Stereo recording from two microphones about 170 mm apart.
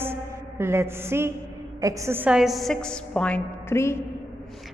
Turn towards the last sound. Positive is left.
turn(degrees=15)  # may be behind; listen again after turning